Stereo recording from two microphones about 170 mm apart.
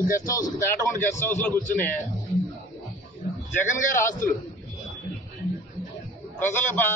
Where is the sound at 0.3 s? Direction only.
20° left (ahead or behind).